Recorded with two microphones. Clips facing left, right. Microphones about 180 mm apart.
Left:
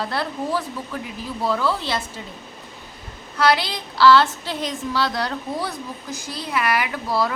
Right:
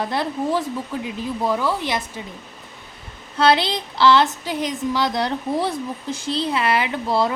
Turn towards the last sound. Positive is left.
turn(degrees=-25)  # may be behind; listen again after turning